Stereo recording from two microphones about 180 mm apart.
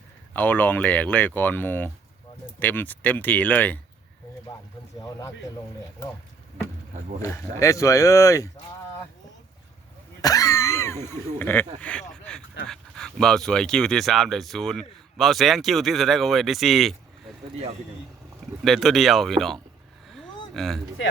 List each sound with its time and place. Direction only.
0.3 s speech: 10° left (ahead or behind)
7.2 s speech: 15° left (ahead or behind)
10.2 s speech: 20° left (ahead or behind); by 16.9 s centre (ahead or behind)
18.6 s speech: centre (ahead or behind)